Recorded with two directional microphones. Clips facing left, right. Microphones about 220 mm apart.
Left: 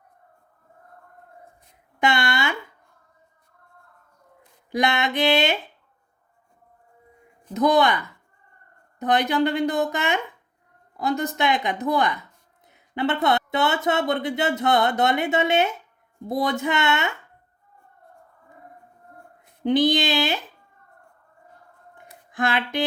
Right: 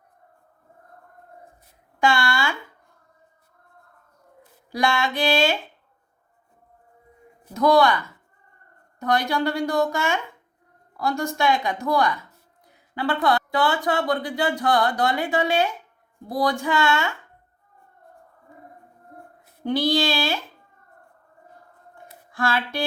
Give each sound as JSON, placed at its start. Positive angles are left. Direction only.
{"t": 2.0, "sound": "speech", "side_deg": 20}
{"t": 4.7, "sound": "speech", "side_deg": 20}
{"t": 7.5, "sound": "speech", "side_deg": 20}
{"t": 19.6, "sound": "speech", "side_deg": 20}
{"t": 21.9, "sound": "a sound", "side_deg": 20}